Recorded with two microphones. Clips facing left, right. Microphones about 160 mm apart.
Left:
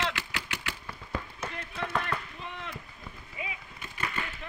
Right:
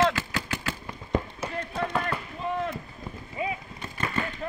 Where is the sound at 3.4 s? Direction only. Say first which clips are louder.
Right 10 dB; 40° right (ahead or behind).